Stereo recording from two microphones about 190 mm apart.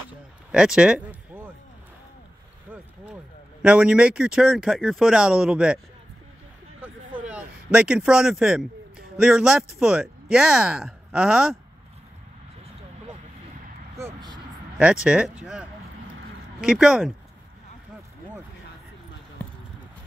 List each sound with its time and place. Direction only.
0.5 s a sound: 5° right (ahead or behind)
3.6 s speech: 5° right (ahead or behind)
6.8 s a sound: 5° right (ahead or behind)
9.1 s speech: 5° right (ahead or behind)
13.9 s vehicle: 20° right (ahead or behind)
14.8 s speech: 5° right (ahead or behind)